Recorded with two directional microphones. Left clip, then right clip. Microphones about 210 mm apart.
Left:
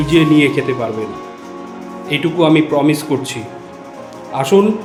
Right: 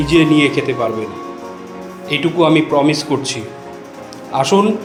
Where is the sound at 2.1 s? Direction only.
15° left (ahead or behind).